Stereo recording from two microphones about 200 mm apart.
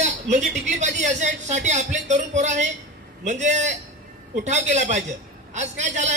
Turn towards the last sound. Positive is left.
turn(degrees=-35)  # may be behind; listen again after turning